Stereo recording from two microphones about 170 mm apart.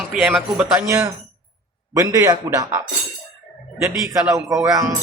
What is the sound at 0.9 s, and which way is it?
A man's voice, 15° right (ahead or behind).